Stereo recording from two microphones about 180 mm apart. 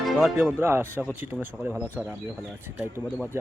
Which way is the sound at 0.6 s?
10° right (ahead or behind).